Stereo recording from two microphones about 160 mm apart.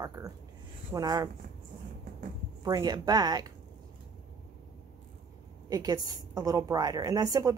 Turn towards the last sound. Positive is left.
turn(degrees=-20)  # may be behind; listen again after turning